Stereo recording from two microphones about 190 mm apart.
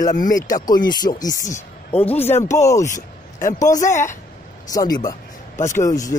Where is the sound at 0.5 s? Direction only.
20° left (ahead or behind).